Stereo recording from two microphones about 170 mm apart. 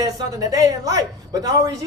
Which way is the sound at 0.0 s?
20° right (ahead or behind).